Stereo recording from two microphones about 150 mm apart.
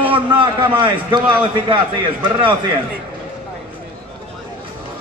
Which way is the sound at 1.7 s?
35° right (ahead or behind).